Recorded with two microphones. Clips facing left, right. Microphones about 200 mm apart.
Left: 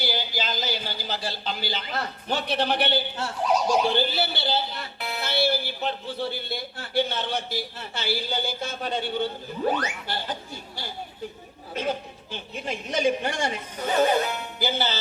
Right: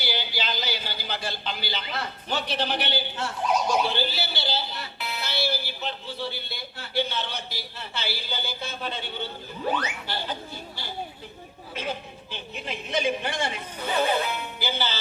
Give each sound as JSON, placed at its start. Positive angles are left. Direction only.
{"t": 0.1, "sound": "a sound", "side_deg": 45}
{"t": 2.5, "sound": "a man's voice", "side_deg": 60}
{"t": 3.2, "sound": "speech", "side_deg": 35}
{"t": 3.9, "sound": "speech", "side_deg": 50}
{"t": 9.6, "sound": "frog", "side_deg": 45}
{"t": 11.7, "sound": "a woman's voice", "side_deg": 45}